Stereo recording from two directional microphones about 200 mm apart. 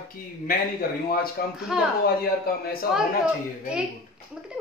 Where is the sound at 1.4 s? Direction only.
50° left (ahead or behind).